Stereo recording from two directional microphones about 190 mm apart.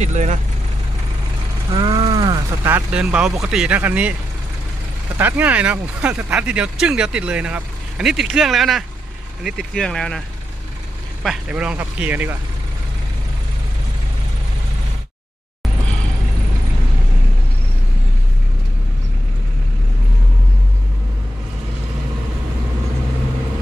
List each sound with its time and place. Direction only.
0.0 s speech: 35° right (ahead or behind)
1.7 s cattle: 25° right (ahead or behind)
2.7 s speech: 5° right (ahead or behind)
5.1 s speech: 10° right (ahead or behind)
11.2 s speech: 5° right (ahead or behind)